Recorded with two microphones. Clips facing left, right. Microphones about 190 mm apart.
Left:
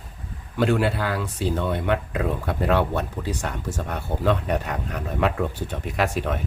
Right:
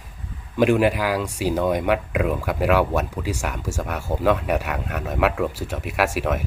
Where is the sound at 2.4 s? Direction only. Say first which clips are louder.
Right 2 dB; 90° right.